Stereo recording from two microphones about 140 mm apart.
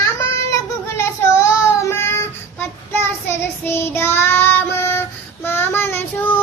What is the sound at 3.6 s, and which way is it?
Child singing, 15° left (ahead or behind).